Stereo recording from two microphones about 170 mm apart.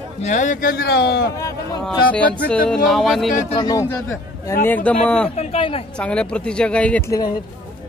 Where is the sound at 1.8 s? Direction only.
10° left (ahead or behind).